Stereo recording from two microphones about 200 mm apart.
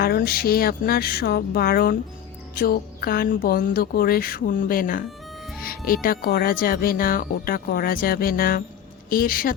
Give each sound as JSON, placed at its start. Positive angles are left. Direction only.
{"t": 0.0, "sound": "a woman's voice", "side_deg": 50}